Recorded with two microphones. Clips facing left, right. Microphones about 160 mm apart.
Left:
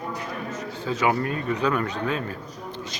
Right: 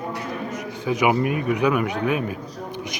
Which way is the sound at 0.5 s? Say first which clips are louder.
Right 4 dB; 15° right (ahead or behind).